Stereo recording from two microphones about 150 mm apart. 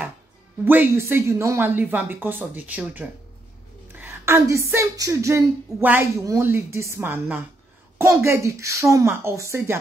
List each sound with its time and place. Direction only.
0.7 s a woman's voice: 15° right (ahead or behind)